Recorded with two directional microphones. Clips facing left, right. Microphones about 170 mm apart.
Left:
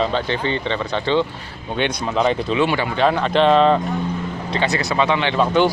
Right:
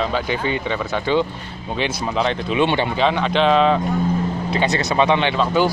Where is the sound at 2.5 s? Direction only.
25° right (ahead or behind).